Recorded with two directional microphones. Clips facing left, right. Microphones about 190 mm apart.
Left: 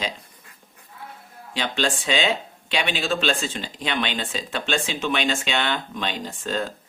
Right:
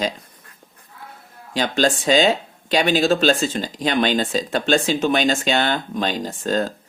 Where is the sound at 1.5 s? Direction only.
40° right (ahead or behind).